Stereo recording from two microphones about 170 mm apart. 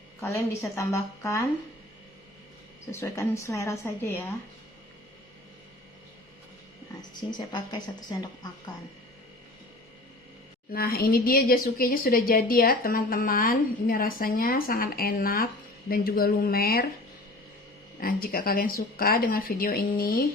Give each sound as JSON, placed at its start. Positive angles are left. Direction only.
{"t": 0.2, "sound": "a woman's voice", "side_deg": 15}
{"t": 2.9, "sound": "a woman's voice", "side_deg": 15}
{"t": 7.2, "sound": "speech", "side_deg": 25}
{"t": 10.7, "sound": "speech", "side_deg": 65}
{"t": 18.0, "sound": "speech", "side_deg": 60}